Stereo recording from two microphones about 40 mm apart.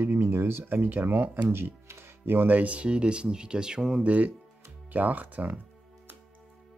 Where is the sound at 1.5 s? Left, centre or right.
Right.